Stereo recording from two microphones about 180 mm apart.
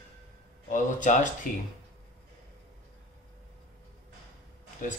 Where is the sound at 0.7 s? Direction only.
45° left (ahead or behind).